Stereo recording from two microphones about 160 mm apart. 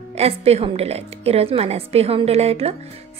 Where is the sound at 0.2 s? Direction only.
40° right (ahead or behind).